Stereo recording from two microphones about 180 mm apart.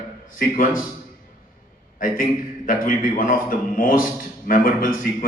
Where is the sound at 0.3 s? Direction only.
50° left (ahead or behind).